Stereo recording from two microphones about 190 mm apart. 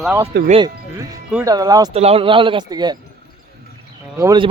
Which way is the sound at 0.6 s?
20° right (ahead or behind).